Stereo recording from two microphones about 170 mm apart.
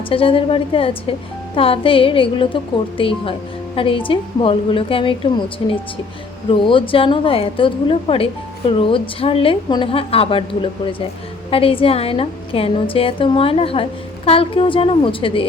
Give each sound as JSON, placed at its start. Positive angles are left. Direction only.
{"t": 0.1, "sound": "a woman's voice", "side_deg": 30}